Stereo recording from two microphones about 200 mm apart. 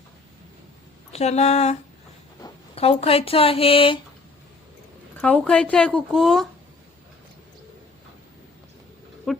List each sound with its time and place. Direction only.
1.1 s a sound: 35° left (ahead or behind)
2.4 s speech: 30° left (ahead or behind)
5.1 s speech: 5° left (ahead or behind)
9.3 s speech: centre (ahead or behind)